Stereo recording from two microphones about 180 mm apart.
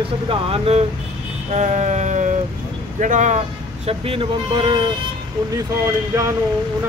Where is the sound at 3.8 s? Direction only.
30° right (ahead or behind).